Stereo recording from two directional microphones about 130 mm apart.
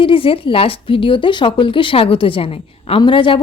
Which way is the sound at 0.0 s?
45° left (ahead or behind).